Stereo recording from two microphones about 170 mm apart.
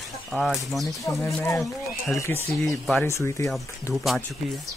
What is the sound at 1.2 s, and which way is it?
Speech, 15° left (ahead or behind).